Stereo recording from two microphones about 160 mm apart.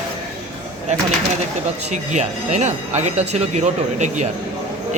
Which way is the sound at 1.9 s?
45° right (ahead or behind).